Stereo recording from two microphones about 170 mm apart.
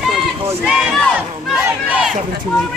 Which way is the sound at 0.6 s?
5° left (ahead or behind).